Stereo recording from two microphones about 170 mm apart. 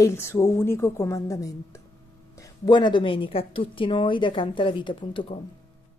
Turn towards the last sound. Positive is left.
turn(degrees=30)  # may be behind; listen again after turning